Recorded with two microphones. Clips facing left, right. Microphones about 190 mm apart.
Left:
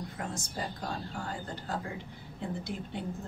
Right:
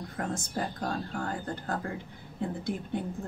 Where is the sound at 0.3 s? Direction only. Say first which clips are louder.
Right 5 dB; 55° right (ahead or behind).